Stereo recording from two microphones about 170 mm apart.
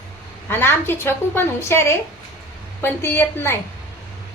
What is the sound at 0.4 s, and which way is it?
A woman's voice, 15° left (ahead or behind).